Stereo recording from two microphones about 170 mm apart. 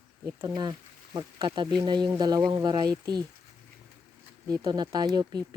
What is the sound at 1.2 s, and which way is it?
Speech, 25° right (ahead or behind).